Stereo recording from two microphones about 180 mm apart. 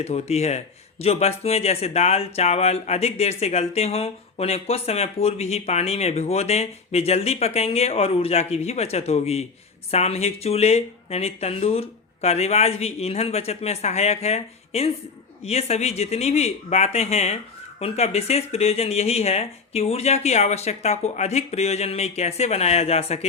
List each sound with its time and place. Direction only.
0.0 s speech: 35° left (ahead or behind)